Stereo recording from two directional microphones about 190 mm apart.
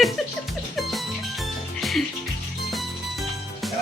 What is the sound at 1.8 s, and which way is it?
Music, centre (ahead or behind).